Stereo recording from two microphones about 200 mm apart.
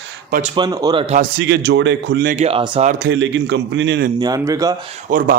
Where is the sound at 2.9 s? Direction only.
55° right (ahead or behind).